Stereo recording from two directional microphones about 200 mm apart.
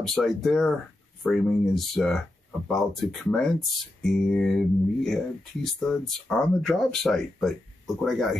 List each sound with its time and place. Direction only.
0.0 s speech: centre (ahead or behind)